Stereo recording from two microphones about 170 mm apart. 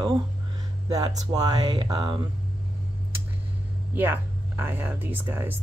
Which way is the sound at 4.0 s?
10° right (ahead or behind).